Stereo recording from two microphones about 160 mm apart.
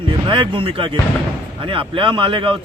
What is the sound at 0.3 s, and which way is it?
Speech, 30° right (ahead or behind).